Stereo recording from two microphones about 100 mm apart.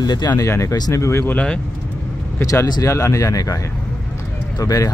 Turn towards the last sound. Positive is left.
turn(degrees=35)  # may be behind; listen again after turning